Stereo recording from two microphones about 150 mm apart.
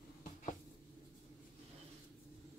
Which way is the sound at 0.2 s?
60° left (ahead or behind).